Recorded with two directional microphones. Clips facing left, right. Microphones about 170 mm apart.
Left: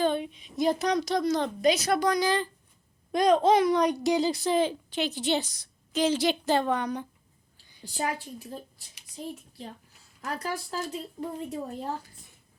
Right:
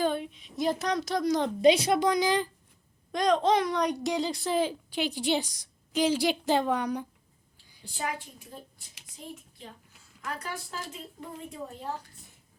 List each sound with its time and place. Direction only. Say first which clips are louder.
0.0 s speech: left 2 dB; 5° right (ahead or behind)
1.6 s a woman's voice: right 3 dB; 30° right (ahead or behind)
3.1 s speech: left 3 dB; 5° left (ahead or behind); by 7.1 s 10° right (ahead or behind)
8.0 s speech: left 4 dB; 40° left (ahead or behind)